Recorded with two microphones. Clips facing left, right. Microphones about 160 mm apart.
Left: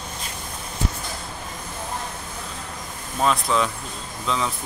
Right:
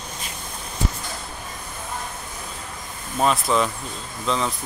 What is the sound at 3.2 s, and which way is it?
Speech, centre (ahead or behind).